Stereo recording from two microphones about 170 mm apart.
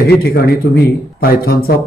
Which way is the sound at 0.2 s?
60° left (ahead or behind).